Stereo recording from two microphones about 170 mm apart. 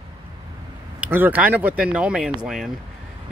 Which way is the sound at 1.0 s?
10° right (ahead or behind).